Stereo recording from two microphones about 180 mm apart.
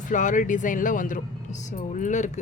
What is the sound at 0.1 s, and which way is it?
Speech, 45° left (ahead or behind).